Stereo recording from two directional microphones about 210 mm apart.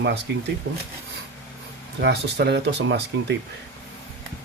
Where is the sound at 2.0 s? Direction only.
50° right (ahead or behind).